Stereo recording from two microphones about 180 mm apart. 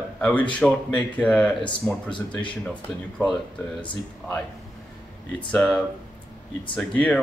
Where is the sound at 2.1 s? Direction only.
25° left (ahead or behind).